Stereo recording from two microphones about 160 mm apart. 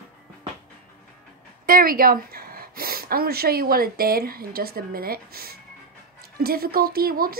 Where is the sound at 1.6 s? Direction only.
65° right (ahead or behind).